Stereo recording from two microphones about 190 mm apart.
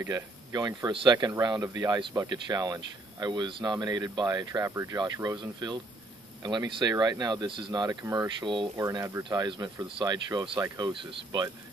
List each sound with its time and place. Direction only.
0.0 s speech: 20° right (ahead or behind)